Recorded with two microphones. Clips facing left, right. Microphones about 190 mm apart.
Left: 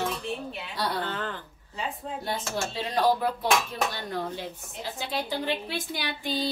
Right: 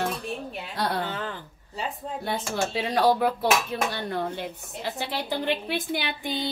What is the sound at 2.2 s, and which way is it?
Speech, 70° right (ahead or behind).